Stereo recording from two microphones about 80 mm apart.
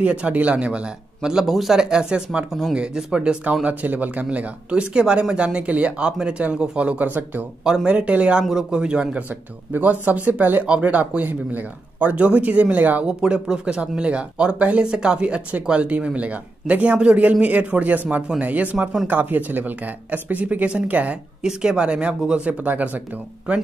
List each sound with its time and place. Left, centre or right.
0.0 s a man's voice: centre
7.6 s a man's voice: centre
9.7 s a man's voice: right